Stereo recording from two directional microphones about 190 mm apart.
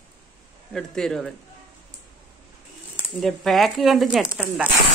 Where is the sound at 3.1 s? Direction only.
Centre (ahead or behind).